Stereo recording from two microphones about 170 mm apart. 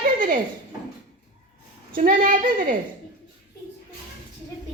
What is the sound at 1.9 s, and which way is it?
Speech, 55° right (ahead or behind).